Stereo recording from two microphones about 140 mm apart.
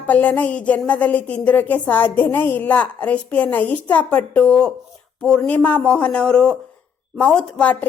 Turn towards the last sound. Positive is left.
turn(degrees=10)  # may be behind; listen again after turning